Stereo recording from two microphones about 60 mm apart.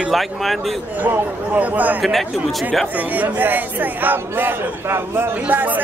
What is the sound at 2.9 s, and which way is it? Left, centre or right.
Speech, right.